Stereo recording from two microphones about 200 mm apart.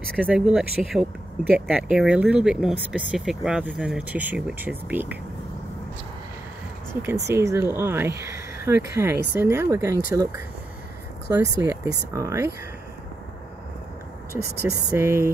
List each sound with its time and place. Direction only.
0.2 s speech: 5° right (ahead or behind)
7.0 s speech: 15° right (ahead or behind)
14.3 s speech: 15° right (ahead or behind)